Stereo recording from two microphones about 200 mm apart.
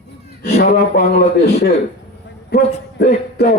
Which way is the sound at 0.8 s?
50° left (ahead or behind).